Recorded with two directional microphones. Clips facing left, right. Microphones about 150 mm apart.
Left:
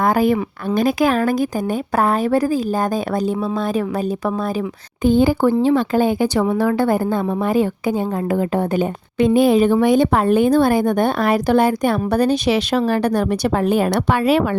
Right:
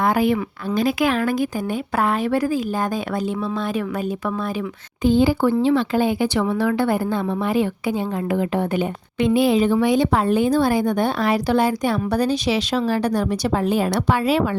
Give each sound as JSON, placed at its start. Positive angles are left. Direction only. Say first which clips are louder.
{"t": 0.0, "sound": "a woman's voice", "louder": "left 3 dB", "side_deg": 40}
{"t": 5.0, "sound": "a woman's voice", "louder": "left 2 dB", "side_deg": 50}